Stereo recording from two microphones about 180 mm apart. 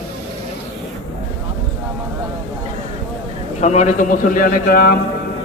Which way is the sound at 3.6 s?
40° left (ahead or behind).